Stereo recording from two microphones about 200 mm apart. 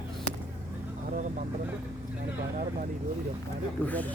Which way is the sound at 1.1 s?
40° right (ahead or behind).